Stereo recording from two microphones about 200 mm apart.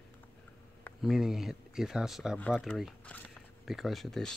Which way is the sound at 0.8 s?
Centre (ahead or behind).